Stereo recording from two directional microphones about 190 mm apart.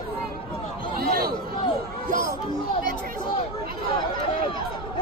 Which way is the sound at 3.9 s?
25° left (ahead or behind).